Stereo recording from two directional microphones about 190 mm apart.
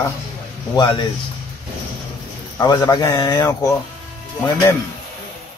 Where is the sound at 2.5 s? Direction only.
20° left (ahead or behind).